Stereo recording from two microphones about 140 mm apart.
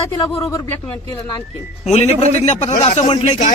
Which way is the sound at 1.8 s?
50° left (ahead or behind).